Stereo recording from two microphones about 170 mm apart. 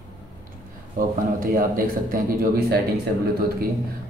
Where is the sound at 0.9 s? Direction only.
55° right (ahead or behind).